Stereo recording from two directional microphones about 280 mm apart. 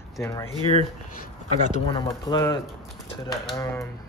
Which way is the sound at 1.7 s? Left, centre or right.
Centre.